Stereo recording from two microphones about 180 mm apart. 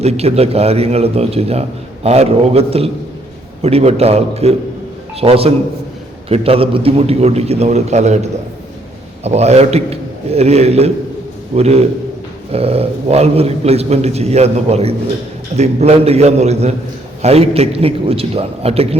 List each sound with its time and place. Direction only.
0.0 s a man's voice: 35° right (ahead or behind)